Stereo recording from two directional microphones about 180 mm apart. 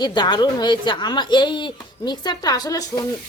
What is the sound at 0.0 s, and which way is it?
A woman's voice, 25° left (ahead or behind).